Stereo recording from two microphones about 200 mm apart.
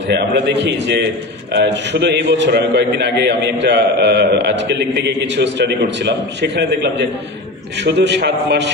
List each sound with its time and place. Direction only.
0.1 s a man's voice: 60° right (ahead or behind)